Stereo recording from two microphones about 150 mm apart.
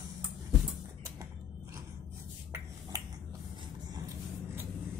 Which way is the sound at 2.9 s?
25° right (ahead or behind).